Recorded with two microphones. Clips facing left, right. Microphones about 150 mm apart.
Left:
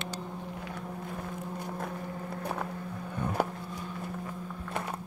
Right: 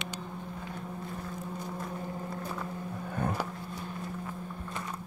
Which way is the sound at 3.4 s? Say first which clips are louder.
Left 5 dB; 55° left (ahead or behind).